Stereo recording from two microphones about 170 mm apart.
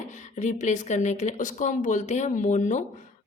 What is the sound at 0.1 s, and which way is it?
A woman's voice, 45° left (ahead or behind).